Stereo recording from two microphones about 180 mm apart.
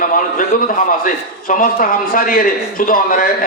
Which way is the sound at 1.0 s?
50° left (ahead or behind).